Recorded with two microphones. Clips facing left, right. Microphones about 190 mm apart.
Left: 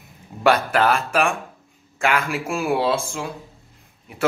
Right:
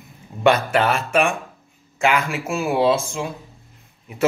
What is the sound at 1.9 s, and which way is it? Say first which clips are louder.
Speech: right 2 dB; centre (ahead or behind).